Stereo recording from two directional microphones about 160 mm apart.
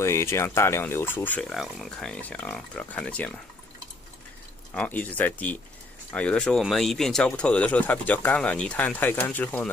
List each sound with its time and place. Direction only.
0.0 s speech: 15° left (ahead or behind)
1.5 s speech: centre (ahead or behind)
4.7 s speech: 10° left (ahead or behind)